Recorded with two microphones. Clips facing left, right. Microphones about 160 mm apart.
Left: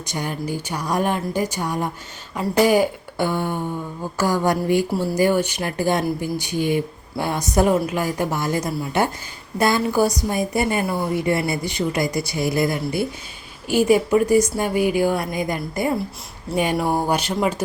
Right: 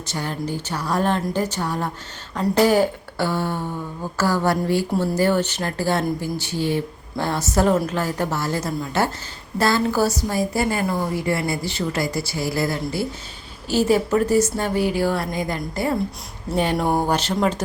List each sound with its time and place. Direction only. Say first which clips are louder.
0.0 s a woman's voice: even; 15° left (ahead or behind)
16.7 s speech: even; centre (ahead or behind)